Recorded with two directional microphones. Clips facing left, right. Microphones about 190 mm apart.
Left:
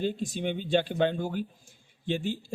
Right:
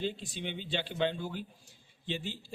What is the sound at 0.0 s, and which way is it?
Speech, 45° left (ahead or behind).